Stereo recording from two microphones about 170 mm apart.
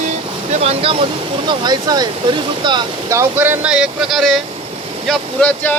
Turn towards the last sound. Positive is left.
turn(degrees=10)  # may be behind; listen again after turning